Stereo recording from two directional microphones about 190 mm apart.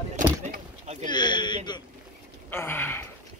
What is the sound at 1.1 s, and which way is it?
Speech, 25° left (ahead or behind).